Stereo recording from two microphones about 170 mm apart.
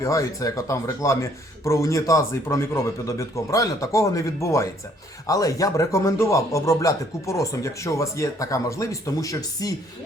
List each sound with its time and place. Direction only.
0.0 s speech: 20° left (ahead or behind)